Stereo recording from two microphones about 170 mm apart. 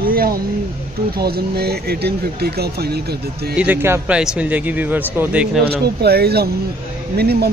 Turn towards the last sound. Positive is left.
turn(degrees=-70)  # may be behind; listen again after turning